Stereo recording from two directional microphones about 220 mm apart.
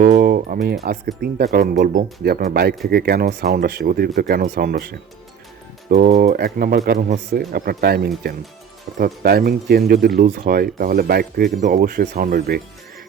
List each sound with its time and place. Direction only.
0.0 s speech: 40° right (ahead or behind)